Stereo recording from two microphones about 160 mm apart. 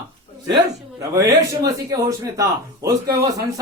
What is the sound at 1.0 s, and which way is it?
Speech, 20° right (ahead or behind).